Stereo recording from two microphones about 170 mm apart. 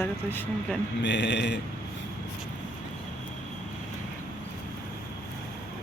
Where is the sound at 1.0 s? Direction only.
90° left.